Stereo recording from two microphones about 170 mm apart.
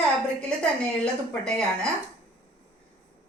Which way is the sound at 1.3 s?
5° left (ahead or behind).